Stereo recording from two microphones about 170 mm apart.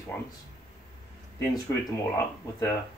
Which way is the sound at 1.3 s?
20° left (ahead or behind).